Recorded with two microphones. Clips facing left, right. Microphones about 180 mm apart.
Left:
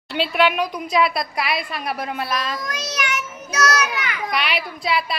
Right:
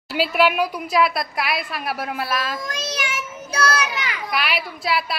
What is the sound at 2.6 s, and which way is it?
Child singing, 25° right (ahead or behind).